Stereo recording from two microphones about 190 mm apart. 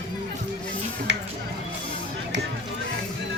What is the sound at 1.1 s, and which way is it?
Music, 70° right (ahead or behind).